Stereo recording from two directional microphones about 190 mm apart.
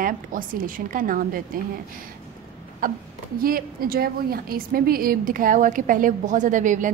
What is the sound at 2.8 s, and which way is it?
A woman's voice, 45° right (ahead or behind).